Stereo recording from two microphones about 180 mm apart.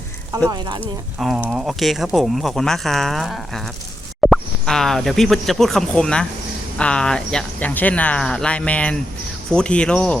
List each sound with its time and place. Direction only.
0.5 s speech: 25° right (ahead or behind)
0.8 s speech: 5° left (ahead or behind)